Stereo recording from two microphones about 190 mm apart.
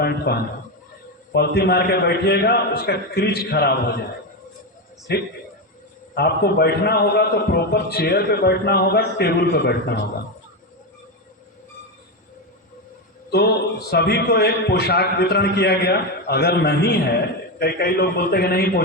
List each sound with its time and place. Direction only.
0.3 s a man's voice: 55° left (ahead or behind)
5.1 s a man's voice: 60° left (ahead or behind)
13.3 s a man's voice: 55° left (ahead or behind)